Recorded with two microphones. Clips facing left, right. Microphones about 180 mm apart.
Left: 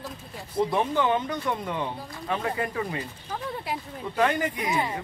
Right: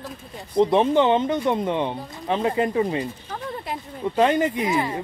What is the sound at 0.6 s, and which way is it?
Speech, 20° right (ahead or behind).